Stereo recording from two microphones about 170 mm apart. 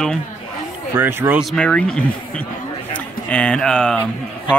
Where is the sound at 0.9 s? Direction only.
10° right (ahead or behind).